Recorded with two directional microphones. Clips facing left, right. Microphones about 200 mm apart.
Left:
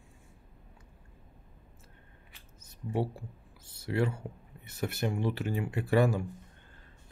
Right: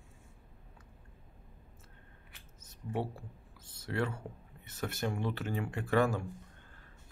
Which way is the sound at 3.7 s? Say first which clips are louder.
Left 4 dB; 10° left (ahead or behind).